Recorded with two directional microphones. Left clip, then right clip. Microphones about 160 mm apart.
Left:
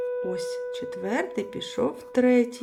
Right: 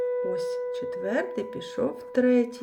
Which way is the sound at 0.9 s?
30° left (ahead or behind).